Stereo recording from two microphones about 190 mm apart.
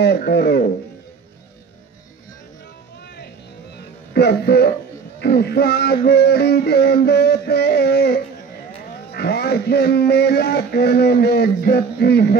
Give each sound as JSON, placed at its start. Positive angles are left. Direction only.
{"t": 0.0, "sound": "speech", "side_deg": 60}
{"t": 4.1, "sound": "a man's voice", "side_deg": 55}